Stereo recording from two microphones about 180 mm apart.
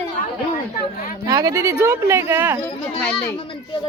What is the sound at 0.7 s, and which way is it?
Speech, 50° left (ahead or behind).